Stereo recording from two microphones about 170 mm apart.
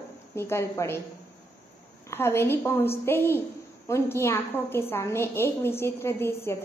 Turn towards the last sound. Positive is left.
turn(degrees=15)  # may be behind; listen again after turning